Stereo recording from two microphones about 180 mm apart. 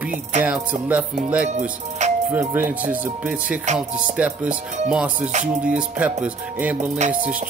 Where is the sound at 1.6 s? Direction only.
40° right (ahead or behind).